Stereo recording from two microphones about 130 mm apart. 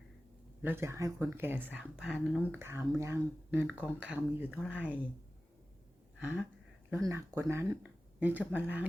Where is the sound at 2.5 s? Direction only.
20° right (ahead or behind).